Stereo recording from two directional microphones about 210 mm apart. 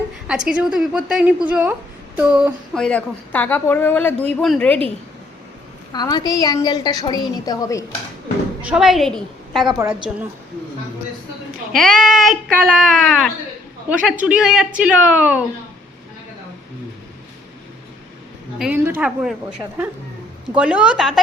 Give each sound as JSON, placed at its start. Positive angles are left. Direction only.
{"t": 0.3, "sound": "speech", "side_deg": -5}
{"t": 2.1, "sound": "a sound", "side_deg": -5}
{"t": 2.8, "sound": "speech", "side_deg": 5}
{"t": 5.9, "sound": "a woman's voice", "side_deg": 20}
{"t": 8.6, "sound": "speech", "side_deg": -5}
{"t": 9.6, "sound": "a sound", "side_deg": -15}
{"t": 11.7, "sound": "speech", "side_deg": 0}
{"t": 18.6, "sound": "speech", "side_deg": -10}